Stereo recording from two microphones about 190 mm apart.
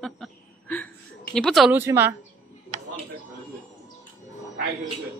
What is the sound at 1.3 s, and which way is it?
Speech, centre (ahead or behind).